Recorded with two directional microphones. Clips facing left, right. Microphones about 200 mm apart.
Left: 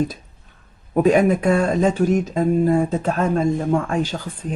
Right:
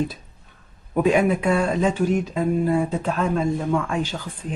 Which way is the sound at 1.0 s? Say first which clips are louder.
Left 3 dB; 45° left (ahead or behind).